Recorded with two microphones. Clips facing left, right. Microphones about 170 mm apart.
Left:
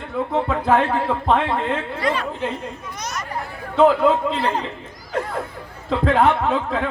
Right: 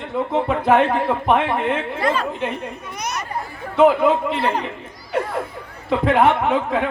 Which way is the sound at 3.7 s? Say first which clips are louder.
Right 1 dB; 15° right (ahead or behind).